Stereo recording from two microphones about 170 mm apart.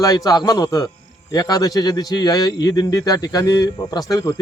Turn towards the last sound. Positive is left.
turn(degrees=20)  # may be behind; listen again after turning